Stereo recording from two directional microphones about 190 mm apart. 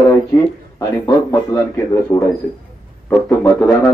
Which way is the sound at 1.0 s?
15° left (ahead or behind).